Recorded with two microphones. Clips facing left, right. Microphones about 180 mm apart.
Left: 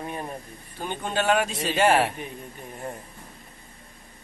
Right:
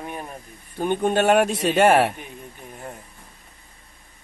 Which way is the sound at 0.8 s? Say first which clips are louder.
Right 8 dB; 55° right (ahead or behind).